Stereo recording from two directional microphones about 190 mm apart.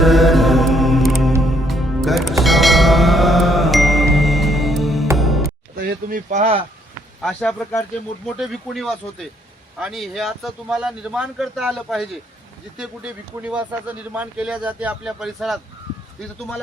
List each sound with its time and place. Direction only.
0.0 s music: centre (ahead or behind)
5.8 s a sound: 50° right (ahead or behind); by 6.7 s 35° right (ahead or behind)
7.2 s speech: 5° left (ahead or behind)